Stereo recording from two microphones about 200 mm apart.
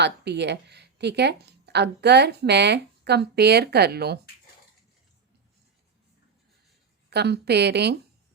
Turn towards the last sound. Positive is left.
turn(degrees=-55)  # may be behind; listen again after turning